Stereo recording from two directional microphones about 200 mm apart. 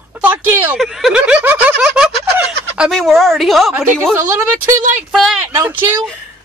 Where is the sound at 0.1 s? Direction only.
10° right (ahead or behind).